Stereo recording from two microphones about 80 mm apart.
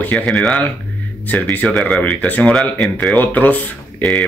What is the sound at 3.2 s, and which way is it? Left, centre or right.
Speech, centre.